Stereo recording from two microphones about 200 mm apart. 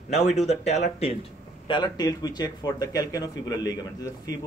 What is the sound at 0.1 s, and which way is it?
Speech, 35° left (ahead or behind).